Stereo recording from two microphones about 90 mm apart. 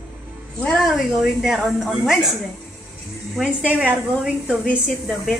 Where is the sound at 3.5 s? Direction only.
15° right (ahead or behind).